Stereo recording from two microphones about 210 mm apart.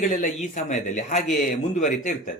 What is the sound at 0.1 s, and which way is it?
Speech, 40° left (ahead or behind).